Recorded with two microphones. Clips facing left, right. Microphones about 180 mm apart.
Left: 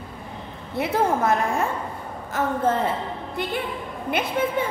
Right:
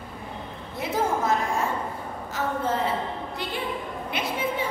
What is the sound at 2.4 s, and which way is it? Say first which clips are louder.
Speech: left 4 dB; 50° left (ahead or behind).